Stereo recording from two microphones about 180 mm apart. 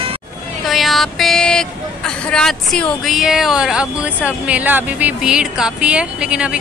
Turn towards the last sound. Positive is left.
turn(degrees=-5)  # may be behind; listen again after turning